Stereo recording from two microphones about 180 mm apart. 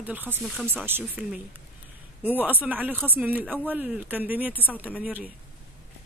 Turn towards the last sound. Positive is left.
turn(degrees=-10)  # may be behind; listen again after turning